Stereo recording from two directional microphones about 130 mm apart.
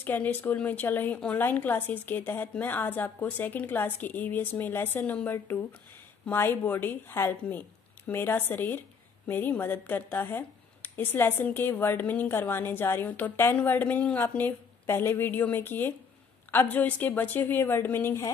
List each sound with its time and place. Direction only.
0.0 s a woman's voice: 15° left (ahead or behind)